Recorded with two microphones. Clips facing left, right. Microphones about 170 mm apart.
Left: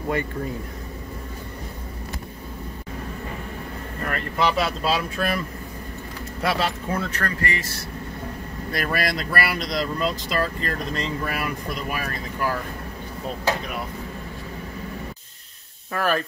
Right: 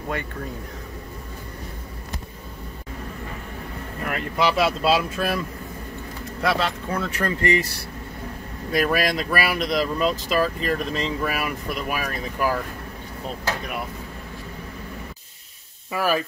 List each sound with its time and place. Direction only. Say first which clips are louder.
4.0 s speech: right 1 dB; 5° right (ahead or behind)
6.4 s speech: right 1 dB; centre (ahead or behind)
7.1 s speech: right 5 dB; 15° right (ahead or behind)
8.7 s speech: right 4 dB; 5° right (ahead or behind)
15.9 s speech: right 1 dB; 5° right (ahead or behind)